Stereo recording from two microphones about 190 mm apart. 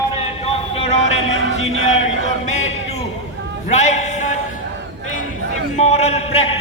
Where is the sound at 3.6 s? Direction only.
40° left (ahead or behind).